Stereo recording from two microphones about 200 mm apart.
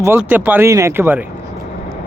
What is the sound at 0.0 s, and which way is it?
Speech, 10° right (ahead or behind).